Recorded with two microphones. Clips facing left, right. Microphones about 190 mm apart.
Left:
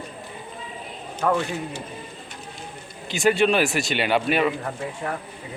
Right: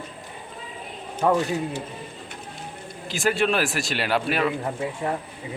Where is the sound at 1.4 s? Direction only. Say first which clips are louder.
Right 3 dB; 40° right (ahead or behind).